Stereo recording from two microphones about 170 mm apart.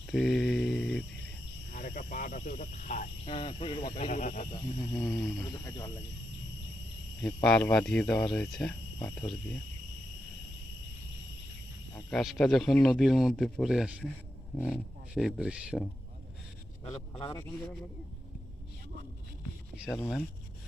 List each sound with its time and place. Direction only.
0.1 s mantra: centre (ahead or behind)
1.7 s speech: 55° left (ahead or behind)
3.2 s speech: 35° left (ahead or behind)
3.8 s speech: 50° left (ahead or behind)
4.9 s speech: 5° left (ahead or behind)
5.4 s speech: 20° left (ahead or behind)
7.2 s speech: 5° left (ahead or behind)
12.1 s speech: centre (ahead or behind)
17.2 s speech: 25° left (ahead or behind)
19.7 s a sound: 5° right (ahead or behind)